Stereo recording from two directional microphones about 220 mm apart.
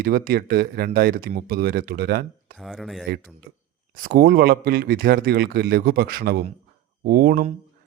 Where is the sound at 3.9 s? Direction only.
40° right (ahead or behind).